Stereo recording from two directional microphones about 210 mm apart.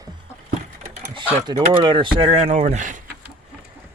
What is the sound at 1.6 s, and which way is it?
Speech, 25° right (ahead or behind).